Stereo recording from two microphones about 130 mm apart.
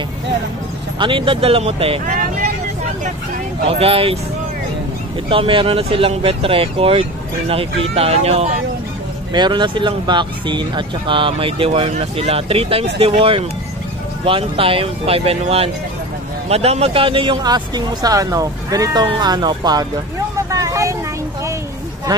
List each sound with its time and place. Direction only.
0.9 s speech: 40° right (ahead or behind)
3.6 s speech: 50° right (ahead or behind)
5.3 s speech: 45° right (ahead or behind)
9.3 s speech: 35° right (ahead or behind)
20.4 s vehicle: 25° right (ahead or behind)